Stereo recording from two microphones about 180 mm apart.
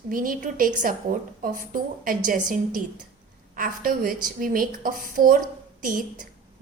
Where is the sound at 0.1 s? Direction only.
50° right (ahead or behind).